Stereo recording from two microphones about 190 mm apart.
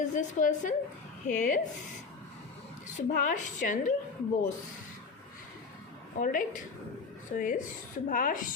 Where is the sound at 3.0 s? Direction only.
40° left (ahead or behind).